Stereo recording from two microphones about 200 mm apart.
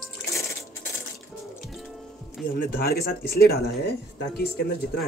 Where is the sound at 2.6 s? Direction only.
45° left (ahead or behind).